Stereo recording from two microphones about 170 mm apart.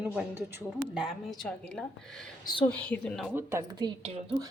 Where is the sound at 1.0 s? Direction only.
Centre (ahead or behind).